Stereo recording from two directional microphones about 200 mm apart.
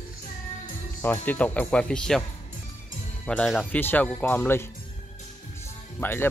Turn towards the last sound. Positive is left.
turn(degrees=10)  # may be behind; listen again after turning